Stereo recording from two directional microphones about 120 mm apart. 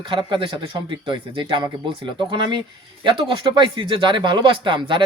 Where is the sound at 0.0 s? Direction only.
40° right (ahead or behind).